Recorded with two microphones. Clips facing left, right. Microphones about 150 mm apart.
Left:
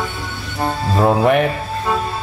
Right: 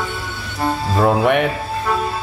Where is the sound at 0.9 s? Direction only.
Centre (ahead or behind).